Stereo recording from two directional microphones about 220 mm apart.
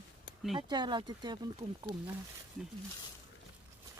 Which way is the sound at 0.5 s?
20° right (ahead or behind).